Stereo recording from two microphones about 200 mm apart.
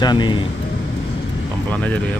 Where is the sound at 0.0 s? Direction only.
20° left (ahead or behind).